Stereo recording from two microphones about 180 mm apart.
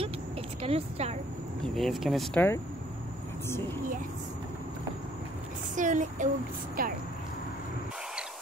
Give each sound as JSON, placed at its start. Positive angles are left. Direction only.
{"t": 0.6, "sound": "a woman's voice", "side_deg": -35}
{"t": 1.8, "sound": "speech", "side_deg": 0}
{"t": 3.4, "sound": "a woman's voice", "side_deg": 15}
{"t": 5.8, "sound": "a sound", "side_deg": -45}